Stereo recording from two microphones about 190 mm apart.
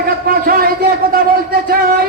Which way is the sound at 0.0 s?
50° right (ahead or behind).